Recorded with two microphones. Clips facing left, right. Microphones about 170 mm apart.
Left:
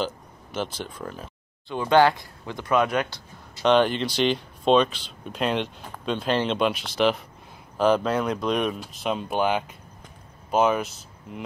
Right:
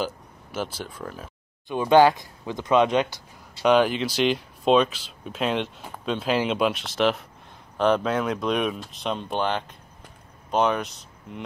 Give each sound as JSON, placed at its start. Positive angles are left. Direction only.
{"t": 0.0, "sound": "speech", "side_deg": -5}
{"t": 1.7, "sound": "speech", "side_deg": -15}
{"t": 3.6, "sound": "speech", "side_deg": -5}